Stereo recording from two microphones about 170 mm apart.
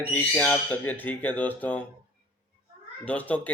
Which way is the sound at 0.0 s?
10° left (ahead or behind).